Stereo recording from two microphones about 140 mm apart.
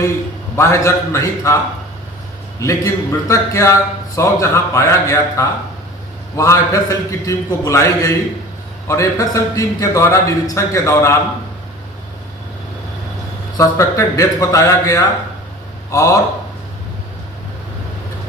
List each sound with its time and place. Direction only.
0.5 s a man's voice: 20° left (ahead or behind)
2.6 s a man's voice: 20° left (ahead or behind)
13.6 s a man's voice: 20° left (ahead or behind)